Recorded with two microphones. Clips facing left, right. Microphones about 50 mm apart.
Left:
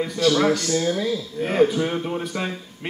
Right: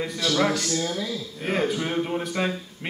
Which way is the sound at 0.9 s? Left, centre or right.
Left.